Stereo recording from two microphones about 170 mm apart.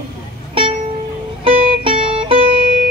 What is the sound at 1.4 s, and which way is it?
Music, 30° right (ahead or behind).